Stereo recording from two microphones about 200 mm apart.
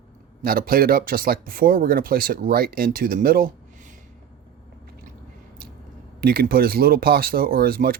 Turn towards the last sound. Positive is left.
turn(degrees=-50)  # may be behind; listen again after turning